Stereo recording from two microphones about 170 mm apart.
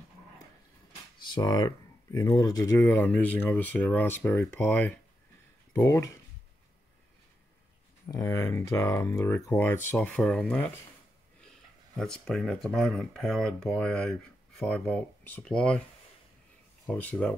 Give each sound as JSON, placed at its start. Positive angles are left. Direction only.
{"t": 1.3, "sound": "speech", "side_deg": 25}
{"t": 2.8, "sound": "speech", "side_deg": 10}
{"t": 8.1, "sound": "speech", "side_deg": 15}
{"t": 12.0, "sound": "speech", "side_deg": 5}
{"t": 16.8, "sound": "speech", "side_deg": 5}